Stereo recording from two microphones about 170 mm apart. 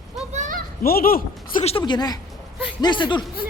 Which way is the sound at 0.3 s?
50° right (ahead or behind).